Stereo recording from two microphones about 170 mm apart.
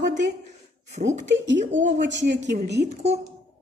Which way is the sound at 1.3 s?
90° right.